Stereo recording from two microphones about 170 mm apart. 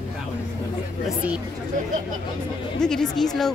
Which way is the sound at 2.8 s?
5° left (ahead or behind).